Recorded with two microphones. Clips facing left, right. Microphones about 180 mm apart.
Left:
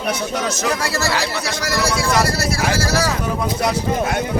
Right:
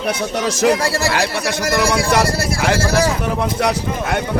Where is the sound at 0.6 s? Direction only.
55° right (ahead or behind).